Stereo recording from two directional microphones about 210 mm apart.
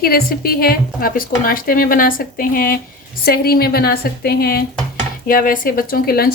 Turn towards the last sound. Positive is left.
turn(degrees=45)  # may be behind; listen again after turning